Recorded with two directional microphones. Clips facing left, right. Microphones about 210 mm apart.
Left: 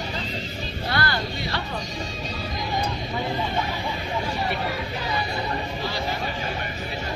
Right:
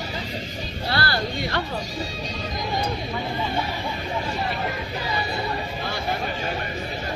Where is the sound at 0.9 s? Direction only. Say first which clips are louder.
Right 1 dB; 35° right (ahead or behind).